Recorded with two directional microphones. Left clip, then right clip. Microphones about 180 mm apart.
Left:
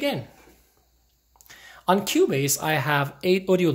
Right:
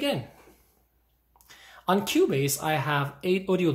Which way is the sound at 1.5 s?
20° left (ahead or behind).